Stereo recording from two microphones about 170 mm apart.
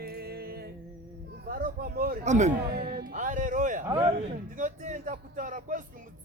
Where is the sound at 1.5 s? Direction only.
55° right (ahead or behind).